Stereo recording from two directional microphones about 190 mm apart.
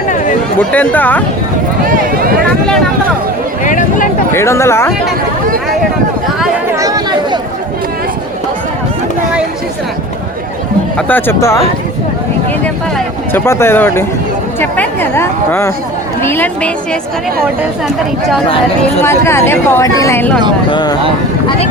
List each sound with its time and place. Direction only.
0.7 s speech: 10° left (ahead or behind)
1.8 s speech: 50° right (ahead or behind)
3.6 s a sound: 45° left (ahead or behind)
4.4 s speech: 15° left (ahead or behind)
6.7 s chatter: 15° right (ahead or behind)
10.9 s speech: 10° left (ahead or behind)
13.3 s speech: 15° left (ahead or behind)
17.6 s speech: centre (ahead or behind)
19.0 s speech: 15° left (ahead or behind)
20.7 s speech: 25° left (ahead or behind)